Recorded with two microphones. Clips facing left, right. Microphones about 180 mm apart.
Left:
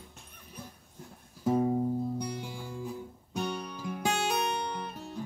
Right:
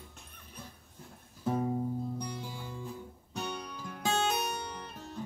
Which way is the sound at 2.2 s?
10° left (ahead or behind).